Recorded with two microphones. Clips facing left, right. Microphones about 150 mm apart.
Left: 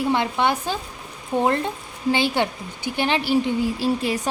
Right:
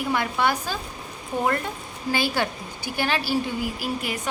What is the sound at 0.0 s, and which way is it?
A woman's voice, 25° left (ahead or behind).